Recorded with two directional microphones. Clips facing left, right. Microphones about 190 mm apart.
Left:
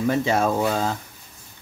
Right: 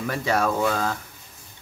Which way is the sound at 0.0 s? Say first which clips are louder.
Left 3 dB; 25° left (ahead or behind).